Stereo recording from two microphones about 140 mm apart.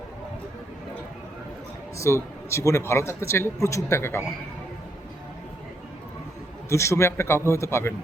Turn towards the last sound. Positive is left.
turn(degrees=20)  # may be behind; listen again after turning